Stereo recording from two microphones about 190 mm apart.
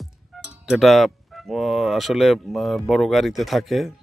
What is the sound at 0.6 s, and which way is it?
Speech, centre (ahead or behind).